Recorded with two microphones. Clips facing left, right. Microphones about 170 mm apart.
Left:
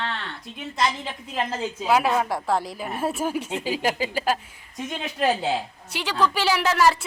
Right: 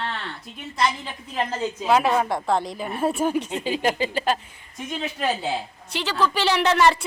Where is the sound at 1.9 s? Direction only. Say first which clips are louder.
Right 1 dB; 5° left (ahead or behind).